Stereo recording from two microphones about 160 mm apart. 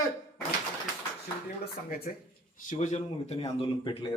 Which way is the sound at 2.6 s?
45° left (ahead or behind).